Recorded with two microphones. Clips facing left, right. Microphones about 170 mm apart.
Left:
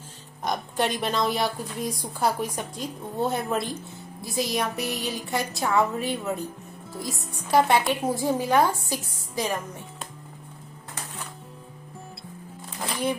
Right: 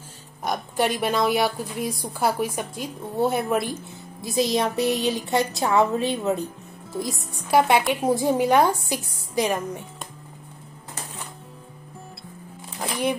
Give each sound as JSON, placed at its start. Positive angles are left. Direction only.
{"t": 0.5, "sound": "a woman's voice", "side_deg": -5}
{"t": 4.2, "sound": "a woman's voice", "side_deg": -25}